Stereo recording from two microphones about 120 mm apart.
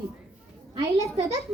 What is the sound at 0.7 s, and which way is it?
Speech, 25° right (ahead or behind).